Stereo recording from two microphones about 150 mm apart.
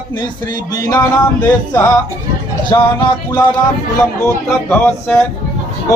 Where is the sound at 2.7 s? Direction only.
20° left (ahead or behind).